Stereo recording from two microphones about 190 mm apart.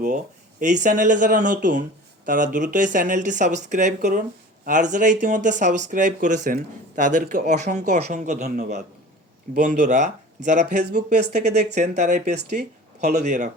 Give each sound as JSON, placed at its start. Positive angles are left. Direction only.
{"t": 0.6, "sound": "speech", "side_deg": -40}